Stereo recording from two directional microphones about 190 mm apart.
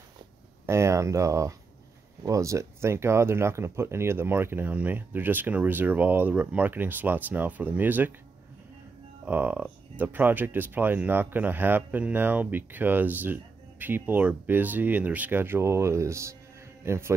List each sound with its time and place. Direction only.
0.7 s speech: 15° right (ahead or behind)
9.2 s speech: 10° right (ahead or behind)